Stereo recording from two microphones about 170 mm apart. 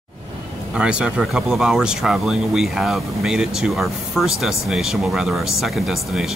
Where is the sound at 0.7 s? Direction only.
5° right (ahead or behind).